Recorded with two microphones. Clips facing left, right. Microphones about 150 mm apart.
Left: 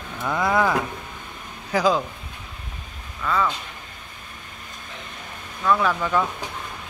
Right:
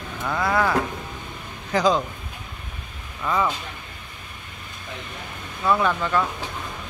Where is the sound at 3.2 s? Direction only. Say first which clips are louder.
Even; 15° right (ahead or behind).